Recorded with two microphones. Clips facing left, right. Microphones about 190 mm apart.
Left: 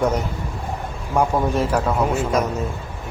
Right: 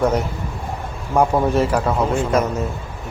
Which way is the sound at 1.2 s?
10° right (ahead or behind).